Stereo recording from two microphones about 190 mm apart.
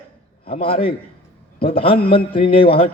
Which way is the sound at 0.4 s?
30° left (ahead or behind).